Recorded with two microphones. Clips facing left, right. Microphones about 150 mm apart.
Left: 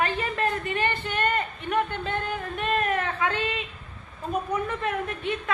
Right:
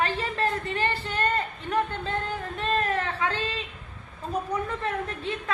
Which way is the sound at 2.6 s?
15° left (ahead or behind).